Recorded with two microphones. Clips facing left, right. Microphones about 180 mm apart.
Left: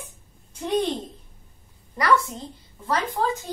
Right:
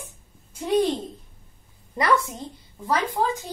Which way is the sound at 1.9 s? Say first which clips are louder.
Even; 20° right (ahead or behind).